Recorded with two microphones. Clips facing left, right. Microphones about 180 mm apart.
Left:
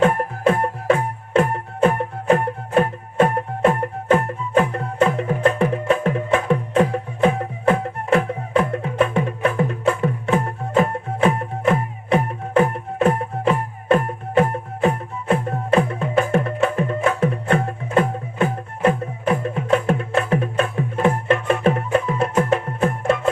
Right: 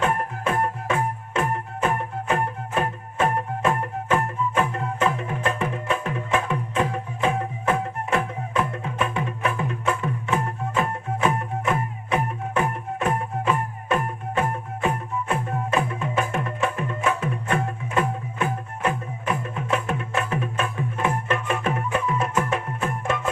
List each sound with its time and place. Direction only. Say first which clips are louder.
0.0 s music: left 7 dB; 35° left (ahead or behind)